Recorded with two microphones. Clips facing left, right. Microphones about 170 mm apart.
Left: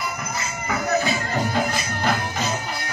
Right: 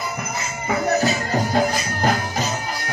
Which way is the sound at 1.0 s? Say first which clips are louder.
Right 3 dB; 40° right (ahead or behind).